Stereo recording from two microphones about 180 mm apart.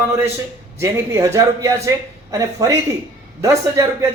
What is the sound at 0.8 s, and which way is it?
A man's voice, 15° right (ahead or behind).